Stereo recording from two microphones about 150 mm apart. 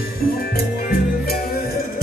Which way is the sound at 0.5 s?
90° left.